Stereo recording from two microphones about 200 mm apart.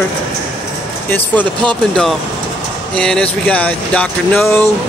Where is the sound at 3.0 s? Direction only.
5° left (ahead or behind).